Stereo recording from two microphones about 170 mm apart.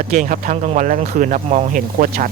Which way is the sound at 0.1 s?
45° right (ahead or behind).